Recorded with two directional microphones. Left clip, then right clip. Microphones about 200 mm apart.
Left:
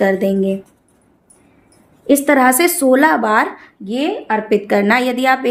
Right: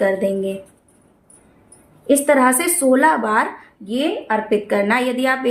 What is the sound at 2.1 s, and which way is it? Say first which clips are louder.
Speech: left 2 dB; 45° left (ahead or behind).